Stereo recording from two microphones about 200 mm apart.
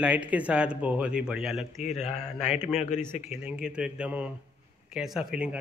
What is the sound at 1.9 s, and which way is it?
Speech, 35° left (ahead or behind).